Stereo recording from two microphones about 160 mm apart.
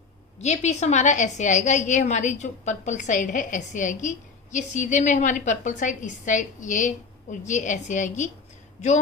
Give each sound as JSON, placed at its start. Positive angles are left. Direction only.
{"t": 0.4, "sound": "a woman's voice", "side_deg": 45}